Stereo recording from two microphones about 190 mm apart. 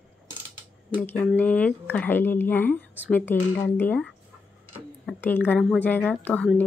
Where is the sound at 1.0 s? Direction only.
10° left (ahead or behind).